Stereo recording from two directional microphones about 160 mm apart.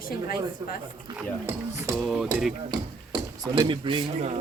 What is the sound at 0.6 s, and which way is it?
Speech, 25° right (ahead or behind).